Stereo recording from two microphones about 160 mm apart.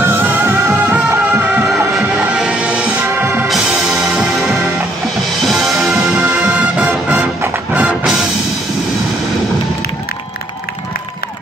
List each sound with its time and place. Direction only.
0.0 s music: 15° right (ahead or behind)